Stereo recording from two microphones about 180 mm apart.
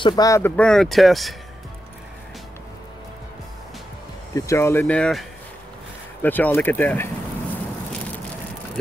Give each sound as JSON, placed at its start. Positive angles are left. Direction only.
{"t": 0.0, "sound": "speech", "side_deg": 20}
{"t": 0.6, "sound": "speech", "side_deg": 5}
{"t": 4.3, "sound": "speech", "side_deg": 15}
{"t": 6.2, "sound": "speech", "side_deg": 10}